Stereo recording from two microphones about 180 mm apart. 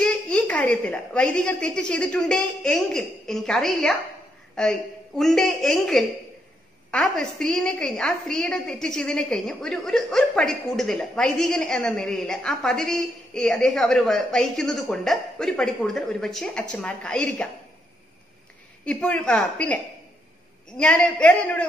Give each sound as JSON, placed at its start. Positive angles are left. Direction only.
{"t": 0.0, "sound": "a woman's voice", "side_deg": 5}
{"t": 18.9, "sound": "speech", "side_deg": 5}